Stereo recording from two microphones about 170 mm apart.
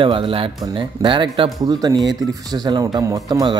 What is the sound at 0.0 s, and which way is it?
Speech, 30° right (ahead or behind).